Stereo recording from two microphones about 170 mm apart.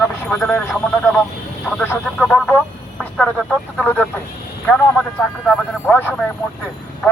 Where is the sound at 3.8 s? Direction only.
10° left (ahead or behind).